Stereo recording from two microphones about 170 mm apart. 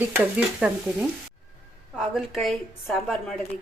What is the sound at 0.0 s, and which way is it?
A woman's voice, 10° right (ahead or behind).